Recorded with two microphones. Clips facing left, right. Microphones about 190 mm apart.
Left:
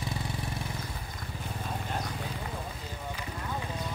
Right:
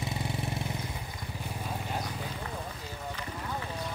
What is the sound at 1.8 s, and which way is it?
Clip-clop, 5° right (ahead or behind).